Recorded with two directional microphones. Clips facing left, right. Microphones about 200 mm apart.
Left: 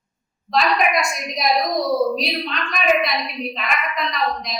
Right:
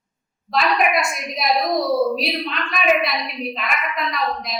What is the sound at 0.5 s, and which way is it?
A woman's voice, 5° right (ahead or behind).